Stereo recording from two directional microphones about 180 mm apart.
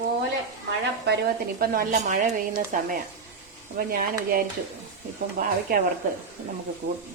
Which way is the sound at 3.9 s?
55° right (ahead or behind).